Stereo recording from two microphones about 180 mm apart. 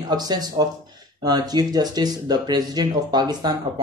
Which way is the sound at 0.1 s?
20° right (ahead or behind).